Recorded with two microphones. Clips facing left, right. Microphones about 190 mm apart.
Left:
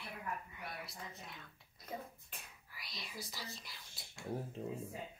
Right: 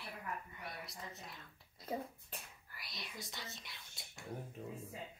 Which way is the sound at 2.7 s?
Centre (ahead or behind).